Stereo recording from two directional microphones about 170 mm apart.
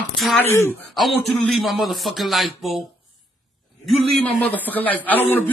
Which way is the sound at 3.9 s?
5° left (ahead or behind).